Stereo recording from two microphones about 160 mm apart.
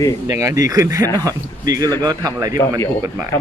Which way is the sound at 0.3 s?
20° right (ahead or behind).